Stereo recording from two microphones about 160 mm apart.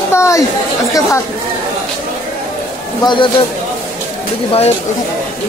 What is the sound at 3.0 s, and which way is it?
Speech, 30° left (ahead or behind).